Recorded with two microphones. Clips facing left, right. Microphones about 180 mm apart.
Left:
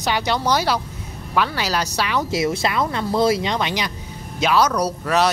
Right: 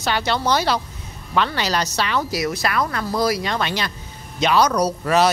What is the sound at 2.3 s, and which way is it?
Speech, 25° left (ahead or behind).